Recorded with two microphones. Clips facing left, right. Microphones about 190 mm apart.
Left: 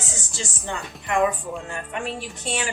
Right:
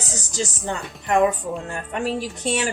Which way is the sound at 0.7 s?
40° right (ahead or behind).